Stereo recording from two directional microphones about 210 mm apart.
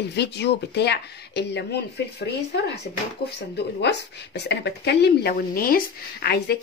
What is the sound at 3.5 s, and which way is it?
Speech, 55° left (ahead or behind).